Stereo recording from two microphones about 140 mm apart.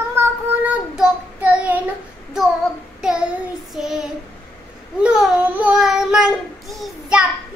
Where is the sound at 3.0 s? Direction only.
5° right (ahead or behind).